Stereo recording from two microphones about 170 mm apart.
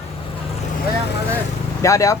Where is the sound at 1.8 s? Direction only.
20° left (ahead or behind).